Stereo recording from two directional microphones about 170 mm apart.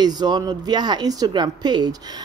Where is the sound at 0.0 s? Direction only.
25° right (ahead or behind).